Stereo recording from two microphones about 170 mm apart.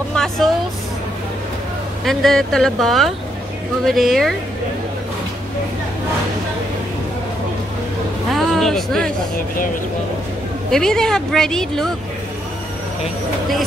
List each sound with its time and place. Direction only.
0.1 s speech: 5° left (ahead or behind)
2.0 s speech: centre (ahead or behind)
8.3 s a sound: centre (ahead or behind)
10.7 s speech: 5° left (ahead or behind)